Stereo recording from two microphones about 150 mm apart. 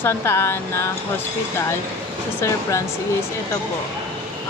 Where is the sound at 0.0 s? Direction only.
15° left (ahead or behind).